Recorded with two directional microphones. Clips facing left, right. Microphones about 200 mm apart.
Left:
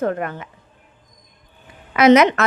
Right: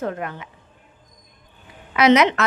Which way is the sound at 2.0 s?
50° left (ahead or behind).